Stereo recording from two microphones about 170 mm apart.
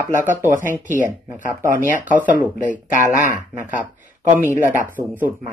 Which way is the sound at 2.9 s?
45° right (ahead or behind).